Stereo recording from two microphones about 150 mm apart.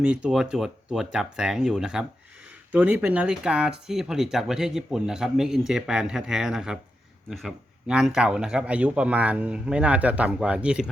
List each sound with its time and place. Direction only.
0.0 s a man's voice: 5° right (ahead or behind)